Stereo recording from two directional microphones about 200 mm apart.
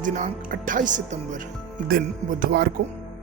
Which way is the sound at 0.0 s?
40° right (ahead or behind).